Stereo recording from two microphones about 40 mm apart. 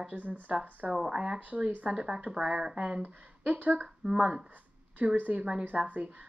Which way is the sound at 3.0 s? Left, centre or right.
Right.